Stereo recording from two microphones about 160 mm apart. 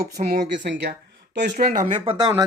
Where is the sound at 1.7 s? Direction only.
50° right (ahead or behind).